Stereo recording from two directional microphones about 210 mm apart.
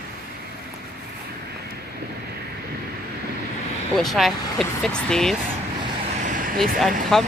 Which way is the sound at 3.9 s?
Centre (ahead or behind).